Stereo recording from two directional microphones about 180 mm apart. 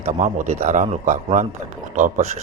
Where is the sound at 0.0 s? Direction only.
40° right (ahead or behind).